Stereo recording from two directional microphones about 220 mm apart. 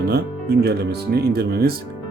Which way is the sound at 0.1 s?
45° right (ahead or behind).